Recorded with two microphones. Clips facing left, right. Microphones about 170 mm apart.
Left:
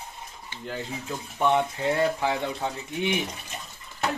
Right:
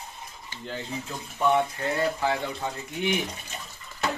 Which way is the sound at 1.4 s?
20° left (ahead or behind).